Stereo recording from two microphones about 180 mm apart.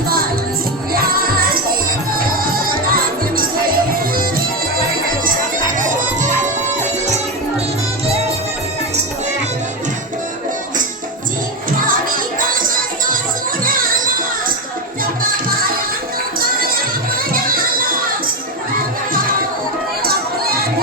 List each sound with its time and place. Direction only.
0.9 s music: 55° right (ahead or behind)
5.7 s music: 45° right (ahead or behind)
11.8 s music: 50° right (ahead or behind)
16.4 s music: 55° right (ahead or behind)
20.1 s a sound: 55° right (ahead or behind)